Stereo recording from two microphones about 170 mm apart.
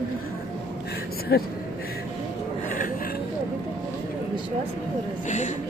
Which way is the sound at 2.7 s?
55° left (ahead or behind).